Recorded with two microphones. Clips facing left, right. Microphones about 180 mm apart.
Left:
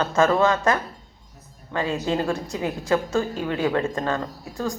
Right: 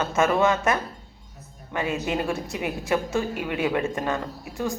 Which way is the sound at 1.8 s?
20° right (ahead or behind).